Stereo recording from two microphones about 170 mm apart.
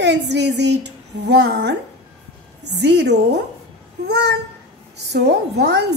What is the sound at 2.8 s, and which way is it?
Speech, 85° right.